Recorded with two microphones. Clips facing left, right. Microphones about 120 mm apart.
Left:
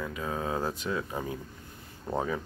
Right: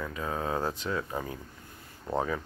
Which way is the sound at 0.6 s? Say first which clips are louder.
Even; 10° left (ahead or behind).